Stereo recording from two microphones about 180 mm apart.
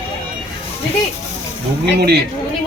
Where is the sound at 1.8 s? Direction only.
65° right (ahead or behind).